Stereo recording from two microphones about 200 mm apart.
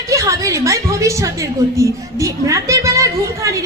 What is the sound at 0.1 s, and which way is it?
A woman's voice, 15° right (ahead or behind).